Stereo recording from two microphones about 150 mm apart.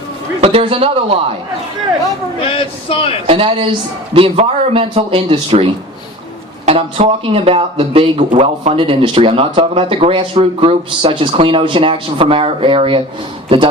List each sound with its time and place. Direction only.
0.4 s speech: 40° right (ahead or behind)
2.4 s speech: 35° left (ahead or behind)
3.2 s speech: 40° right (ahead or behind)
8.3 s a man's voice: 55° right (ahead or behind)
8.7 s speech: 35° right (ahead or behind)